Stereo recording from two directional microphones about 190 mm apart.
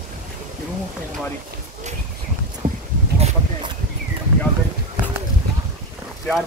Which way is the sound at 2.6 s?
40° right (ahead or behind).